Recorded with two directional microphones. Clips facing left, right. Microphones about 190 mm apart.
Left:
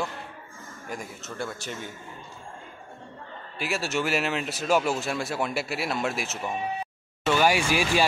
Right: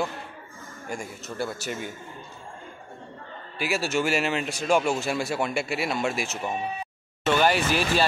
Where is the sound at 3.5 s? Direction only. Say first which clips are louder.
Right 2 dB; centre (ahead or behind).